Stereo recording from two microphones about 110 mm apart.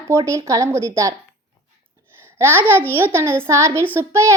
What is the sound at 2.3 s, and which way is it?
A child's voice, 20° right (ahead or behind).